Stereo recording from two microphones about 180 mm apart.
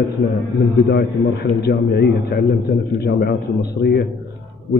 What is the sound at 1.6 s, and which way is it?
A man's voice, 65° left (ahead or behind).